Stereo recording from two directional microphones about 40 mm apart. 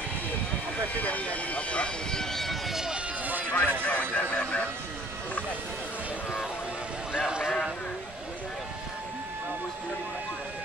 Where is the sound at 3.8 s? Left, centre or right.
Left.